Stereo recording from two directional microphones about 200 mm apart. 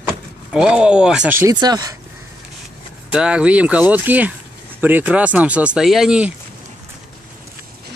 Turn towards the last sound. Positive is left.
turn(degrees=-5)  # may be behind; listen again after turning